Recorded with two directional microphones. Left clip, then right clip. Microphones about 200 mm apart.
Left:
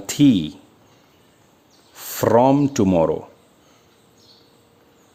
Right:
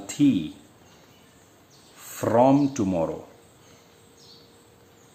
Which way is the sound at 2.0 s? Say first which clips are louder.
Left 5 dB; 50° left (ahead or behind).